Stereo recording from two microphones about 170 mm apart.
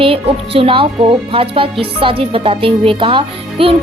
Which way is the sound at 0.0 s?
35° right (ahead or behind).